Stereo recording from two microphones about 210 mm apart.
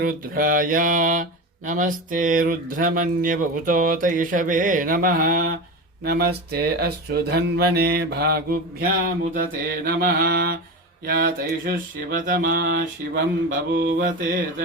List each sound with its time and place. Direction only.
0.0 s mantra: 40° right (ahead or behind)